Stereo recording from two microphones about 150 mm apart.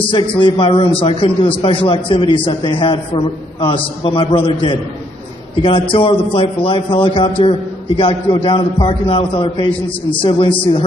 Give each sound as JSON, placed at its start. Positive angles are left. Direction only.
{"t": 0.1, "sound": "a man's voice", "side_deg": 35}
{"t": 5.9, "sound": "a man's voice", "side_deg": 35}